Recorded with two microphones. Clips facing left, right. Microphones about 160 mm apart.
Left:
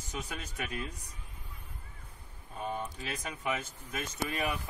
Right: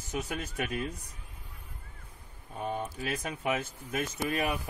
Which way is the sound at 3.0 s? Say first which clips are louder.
Right 5 dB; 55° right (ahead or behind).